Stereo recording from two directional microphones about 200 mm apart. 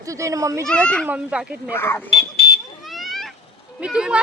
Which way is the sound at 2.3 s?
50° left (ahead or behind).